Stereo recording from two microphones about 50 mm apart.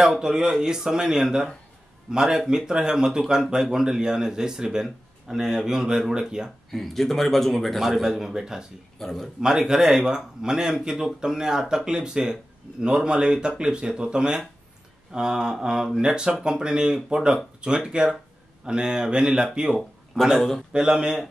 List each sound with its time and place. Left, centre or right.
0.0 s speech: centre
4.8 s speech: centre
6.7 s a man's voice: centre
9.0 s a man's voice: centre
9.4 s speech: centre
20.3 s a man's voice: centre
20.7 s speech: centre